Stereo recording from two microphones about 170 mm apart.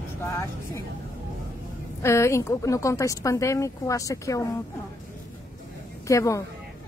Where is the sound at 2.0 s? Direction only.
15° left (ahead or behind).